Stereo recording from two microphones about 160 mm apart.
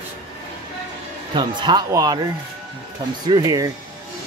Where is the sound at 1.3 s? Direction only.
30° right (ahead or behind).